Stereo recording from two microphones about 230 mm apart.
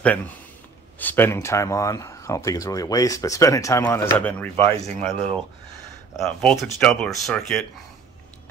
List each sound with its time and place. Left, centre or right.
0.0 s speech: centre
4.8 s speech: right
6.1 s speech: centre